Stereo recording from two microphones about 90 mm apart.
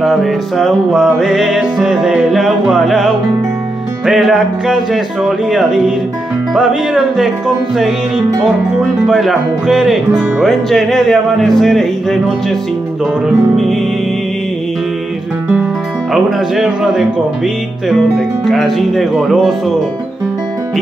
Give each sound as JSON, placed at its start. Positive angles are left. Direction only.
{"t": 0.0, "sound": "music", "side_deg": 0}
{"t": 16.1, "sound": "music", "side_deg": -5}